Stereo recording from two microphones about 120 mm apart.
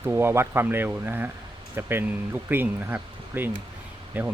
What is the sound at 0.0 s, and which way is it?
Speech, 20° right (ahead or behind).